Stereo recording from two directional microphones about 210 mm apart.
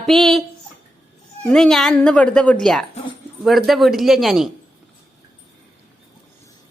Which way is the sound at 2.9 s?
25° left (ahead or behind).